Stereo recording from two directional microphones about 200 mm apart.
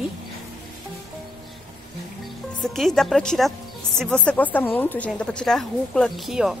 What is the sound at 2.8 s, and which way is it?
A woman's voice, centre (ahead or behind).